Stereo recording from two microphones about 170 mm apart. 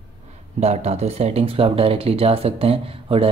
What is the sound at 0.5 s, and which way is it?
Speech, 40° right (ahead or behind).